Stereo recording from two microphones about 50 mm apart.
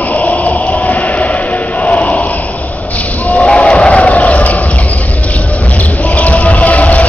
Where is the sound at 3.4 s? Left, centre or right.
Left.